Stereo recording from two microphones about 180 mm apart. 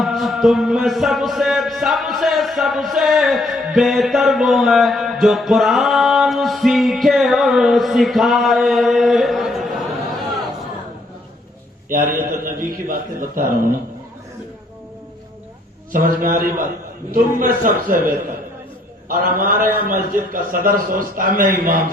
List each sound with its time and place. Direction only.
0.0 s music: centre (ahead or behind)
12.5 s a man's voice: 50° right (ahead or behind)
15.9 s a man's voice: 50° right (ahead or behind)
19.0 s a man's voice: 50° right (ahead or behind)